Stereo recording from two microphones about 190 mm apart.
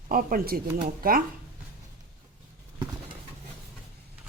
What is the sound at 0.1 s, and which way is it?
Speech, 50° right (ahead or behind).